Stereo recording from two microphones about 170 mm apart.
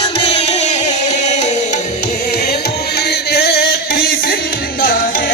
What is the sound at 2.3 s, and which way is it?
Music, 70° left (ahead or behind).